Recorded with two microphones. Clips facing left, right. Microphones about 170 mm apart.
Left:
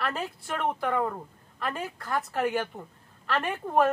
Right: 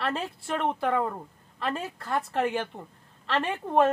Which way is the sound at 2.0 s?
30° right (ahead or behind).